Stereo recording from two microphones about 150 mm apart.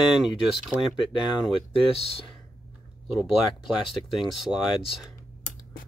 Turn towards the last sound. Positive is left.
turn(degrees=-5)  # may be behind; listen again after turning